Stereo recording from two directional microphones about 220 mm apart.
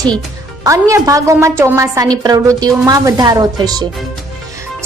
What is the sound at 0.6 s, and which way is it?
A woman's voice, 15° right (ahead or behind).